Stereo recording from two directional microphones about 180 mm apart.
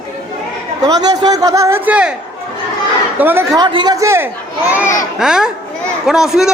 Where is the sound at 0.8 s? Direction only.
20° right (ahead or behind).